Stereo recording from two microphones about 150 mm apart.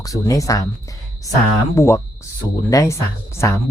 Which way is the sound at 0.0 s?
20° left (ahead or behind).